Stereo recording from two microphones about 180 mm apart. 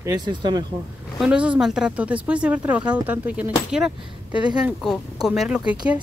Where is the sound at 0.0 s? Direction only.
20° right (ahead or behind).